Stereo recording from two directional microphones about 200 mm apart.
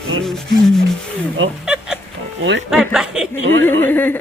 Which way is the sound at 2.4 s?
65° right (ahead or behind).